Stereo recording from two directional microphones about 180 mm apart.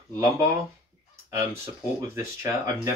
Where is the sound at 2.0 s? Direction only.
15° right (ahead or behind).